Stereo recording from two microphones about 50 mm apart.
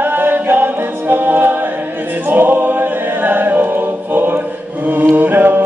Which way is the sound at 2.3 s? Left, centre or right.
Right.